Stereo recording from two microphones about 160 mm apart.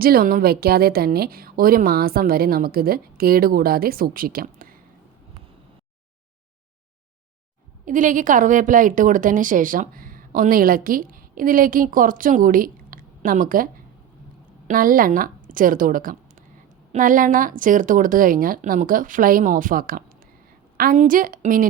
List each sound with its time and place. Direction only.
0.0 s a woman's voice: 65° right (ahead or behind)
7.9 s a woman's voice: 55° right (ahead or behind)
14.7 s a woman's voice: 60° right (ahead or behind)